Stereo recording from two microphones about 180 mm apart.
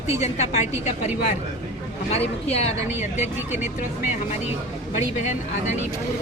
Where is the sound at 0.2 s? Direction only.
40° left (ahead or behind).